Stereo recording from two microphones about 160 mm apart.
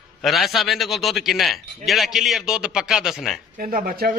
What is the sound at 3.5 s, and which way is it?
Speech, 60° right (ahead or behind).